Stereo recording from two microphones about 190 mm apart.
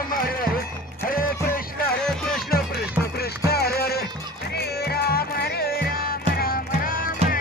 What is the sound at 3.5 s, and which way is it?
Music, 55° left (ahead or behind).